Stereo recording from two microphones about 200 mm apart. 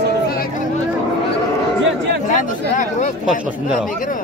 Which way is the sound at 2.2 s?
40° left (ahead or behind).